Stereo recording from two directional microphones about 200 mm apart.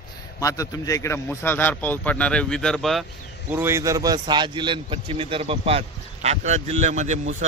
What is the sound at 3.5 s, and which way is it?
A man's voice, 10° right (ahead or behind).